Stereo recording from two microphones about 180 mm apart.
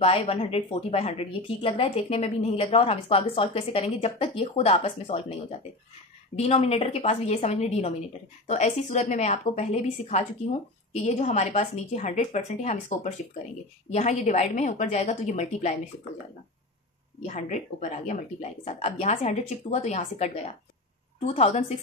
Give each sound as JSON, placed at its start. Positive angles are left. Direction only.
{"t": 0.0, "sound": "a woman's voice", "side_deg": 35}
{"t": 6.3, "sound": "a woman's voice", "side_deg": 35}
{"t": 17.3, "sound": "a woman's voice", "side_deg": 40}